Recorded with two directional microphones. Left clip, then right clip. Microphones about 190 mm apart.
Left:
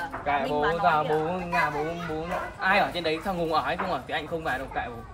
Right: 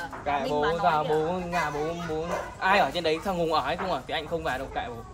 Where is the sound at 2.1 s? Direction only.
25° right (ahead or behind).